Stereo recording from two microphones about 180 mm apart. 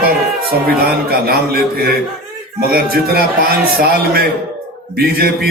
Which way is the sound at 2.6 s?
60° right (ahead or behind).